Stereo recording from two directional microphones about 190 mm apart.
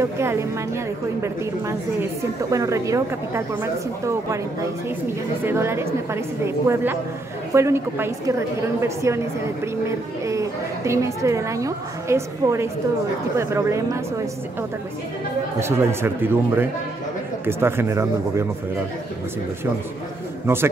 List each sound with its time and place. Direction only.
0.0 s a woman's voice: 15° right (ahead or behind)
5.4 s a woman's voice: 10° right (ahead or behind)
15.6 s a woman's voice: 15° right (ahead or behind)